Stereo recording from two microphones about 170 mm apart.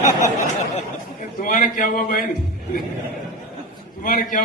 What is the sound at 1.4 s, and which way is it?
Speech, 50° left (ahead or behind).